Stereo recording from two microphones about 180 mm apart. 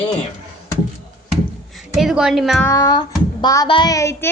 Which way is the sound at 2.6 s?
20° left (ahead or behind).